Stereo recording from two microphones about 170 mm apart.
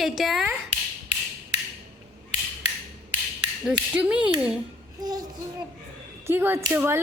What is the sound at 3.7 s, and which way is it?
Speech, 5° right (ahead or behind).